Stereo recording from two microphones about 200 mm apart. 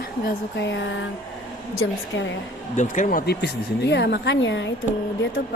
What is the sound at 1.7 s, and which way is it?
Speech, 80° left.